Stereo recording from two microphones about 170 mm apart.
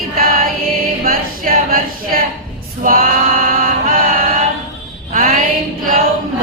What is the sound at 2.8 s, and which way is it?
Chant, 60° right (ahead or behind).